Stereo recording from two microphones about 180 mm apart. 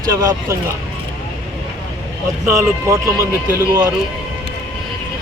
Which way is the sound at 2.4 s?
15° right (ahead or behind).